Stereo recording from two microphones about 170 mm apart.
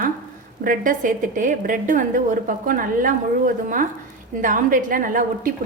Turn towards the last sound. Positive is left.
turn(degrees=-50)  # may be behind; listen again after turning